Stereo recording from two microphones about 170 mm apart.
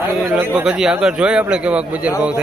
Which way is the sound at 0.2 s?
10° right (ahead or behind).